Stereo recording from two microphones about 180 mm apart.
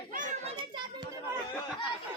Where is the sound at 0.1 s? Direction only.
45° right (ahead or behind).